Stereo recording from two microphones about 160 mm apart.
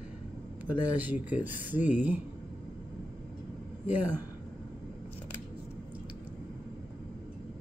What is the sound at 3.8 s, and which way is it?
Speech, 10° right (ahead or behind).